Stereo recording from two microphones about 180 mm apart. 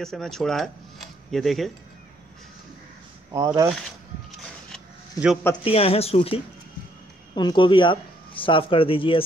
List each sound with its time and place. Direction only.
0.0 s cutlery: centre (ahead or behind)
3.3 s speech: 20° right (ahead or behind)
4.3 s a sound: centre (ahead or behind)
5.6 s speech: 30° left (ahead or behind)